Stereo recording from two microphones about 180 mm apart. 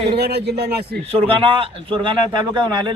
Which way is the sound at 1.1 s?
30° right (ahead or behind).